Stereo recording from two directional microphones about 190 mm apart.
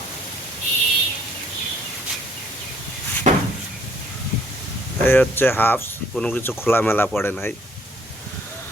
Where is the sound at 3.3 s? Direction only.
40° right (ahead or behind).